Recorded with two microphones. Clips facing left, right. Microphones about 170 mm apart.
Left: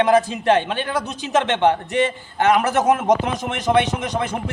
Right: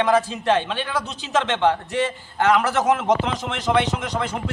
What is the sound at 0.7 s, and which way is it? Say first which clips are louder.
Speech: left 3 dB; 50° left (ahead or behind).